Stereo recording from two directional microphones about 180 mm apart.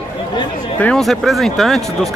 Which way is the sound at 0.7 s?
5° left (ahead or behind).